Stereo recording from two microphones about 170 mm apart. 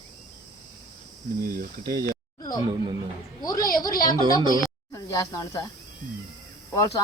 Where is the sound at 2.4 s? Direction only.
25° left (ahead or behind).